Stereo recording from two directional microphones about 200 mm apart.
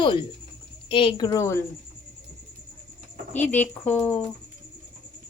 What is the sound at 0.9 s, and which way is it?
Speech, 25° left (ahead or behind).